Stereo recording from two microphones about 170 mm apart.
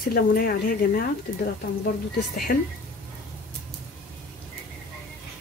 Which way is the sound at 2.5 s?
65° left (ahead or behind).